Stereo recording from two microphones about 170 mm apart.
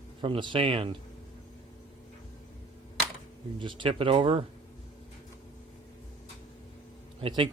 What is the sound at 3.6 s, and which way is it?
Speech, 30° right (ahead or behind).